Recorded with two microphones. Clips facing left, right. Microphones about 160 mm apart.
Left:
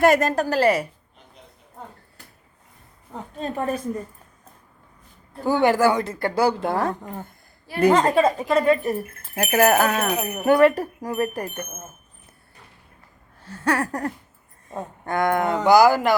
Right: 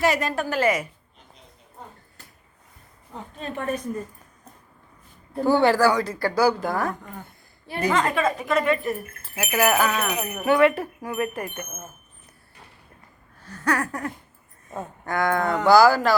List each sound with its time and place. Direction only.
0.0 s speech: 45° left (ahead or behind)
3.4 s speech: 35° left (ahead or behind)
5.5 s speech: 15° left (ahead or behind)
9.4 s speech: 45° left (ahead or behind)
13.4 s speech: 30° left (ahead or behind)